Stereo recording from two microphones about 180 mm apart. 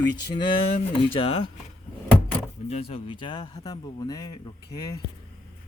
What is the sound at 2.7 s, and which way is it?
Speech, 35° left (ahead or behind).